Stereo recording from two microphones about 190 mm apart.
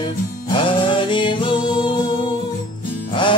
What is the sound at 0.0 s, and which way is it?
Music, 25° left (ahead or behind).